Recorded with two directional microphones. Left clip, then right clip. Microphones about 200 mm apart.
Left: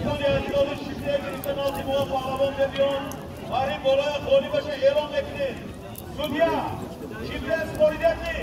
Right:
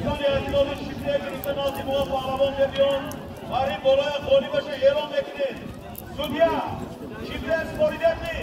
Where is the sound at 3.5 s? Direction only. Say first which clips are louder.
Right 2 dB; 30° left (ahead or behind).